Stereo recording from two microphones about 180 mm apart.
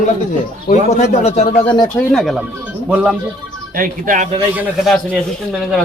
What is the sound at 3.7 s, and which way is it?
Speech, 50° right (ahead or behind).